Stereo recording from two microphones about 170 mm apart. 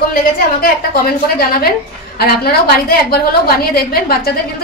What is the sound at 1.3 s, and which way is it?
A woman's voice, 65° left (ahead or behind).